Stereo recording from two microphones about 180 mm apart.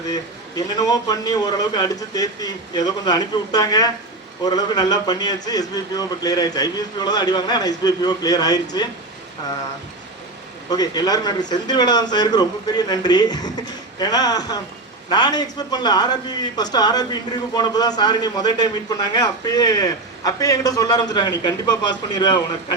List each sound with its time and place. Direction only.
0.1 s a man's voice: 20° left (ahead or behind)
10.7 s a man's voice: 20° left (ahead or behind)